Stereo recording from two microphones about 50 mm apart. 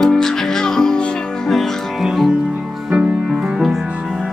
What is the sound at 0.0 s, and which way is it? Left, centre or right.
Music, centre.